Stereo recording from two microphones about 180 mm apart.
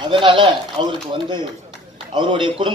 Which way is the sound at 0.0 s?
25° right (ahead or behind).